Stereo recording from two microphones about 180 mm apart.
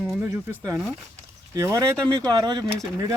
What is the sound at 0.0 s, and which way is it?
Speech, 15° right (ahead or behind).